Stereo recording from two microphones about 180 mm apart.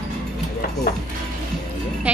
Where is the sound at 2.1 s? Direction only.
5° right (ahead or behind).